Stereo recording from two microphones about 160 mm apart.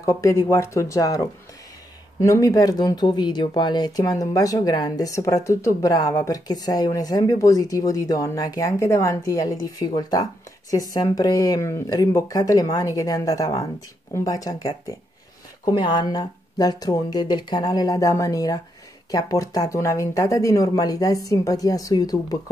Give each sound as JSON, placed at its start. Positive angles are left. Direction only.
{"t": 0.0, "sound": "speech", "side_deg": 20}